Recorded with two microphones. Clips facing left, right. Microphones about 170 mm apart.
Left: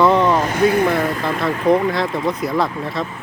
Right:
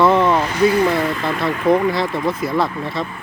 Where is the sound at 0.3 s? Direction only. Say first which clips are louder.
Even; 50° left (ahead or behind).